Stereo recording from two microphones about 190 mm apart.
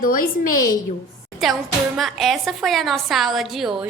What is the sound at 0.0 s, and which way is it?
Speech, 50° left (ahead or behind).